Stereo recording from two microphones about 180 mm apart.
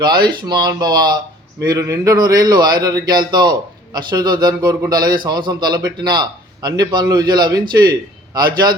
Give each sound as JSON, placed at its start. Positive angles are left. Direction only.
{"t": 0.3, "sound": "a man's voice", "side_deg": -25}